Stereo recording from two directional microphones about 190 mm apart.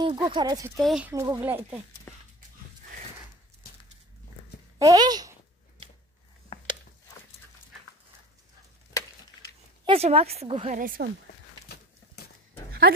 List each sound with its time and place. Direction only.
0.0 s speech: 25° right (ahead or behind)
0.7 s speech: centre (ahead or behind)
4.7 s speech: 20° right (ahead or behind)
6.5 s a sound: 35° left (ahead or behind)
9.8 s a woman's voice: 30° right (ahead or behind)
10.8 s speech: 50° right (ahead or behind)